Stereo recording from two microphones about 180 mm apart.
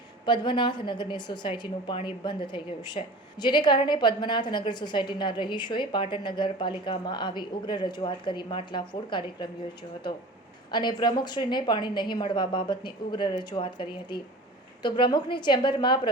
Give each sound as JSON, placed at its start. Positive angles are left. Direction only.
{"t": 0.3, "sound": "a woman's voice", "side_deg": 25}
{"t": 10.7, "sound": "a woman's voice", "side_deg": 25}